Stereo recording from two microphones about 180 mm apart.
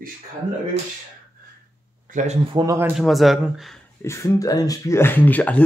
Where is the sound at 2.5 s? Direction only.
20° right (ahead or behind).